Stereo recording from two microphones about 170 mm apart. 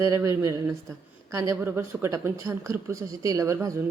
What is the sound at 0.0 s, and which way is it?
Speech, 15° right (ahead or behind).